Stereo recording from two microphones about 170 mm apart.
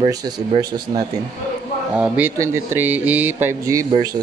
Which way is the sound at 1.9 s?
10° right (ahead or behind).